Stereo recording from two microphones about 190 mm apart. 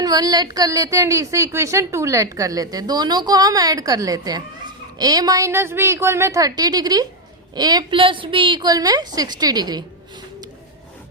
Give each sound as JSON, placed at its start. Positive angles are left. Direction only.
{"t": 0.0, "sound": "a woman's voice", "side_deg": -20}